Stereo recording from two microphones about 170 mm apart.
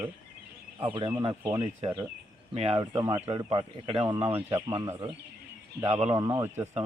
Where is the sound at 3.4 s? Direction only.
35° right (ahead or behind).